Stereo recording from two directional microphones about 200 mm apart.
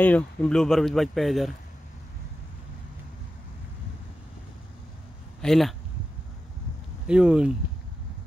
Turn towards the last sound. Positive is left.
turn(degrees=-5)  # may be behind; listen again after turning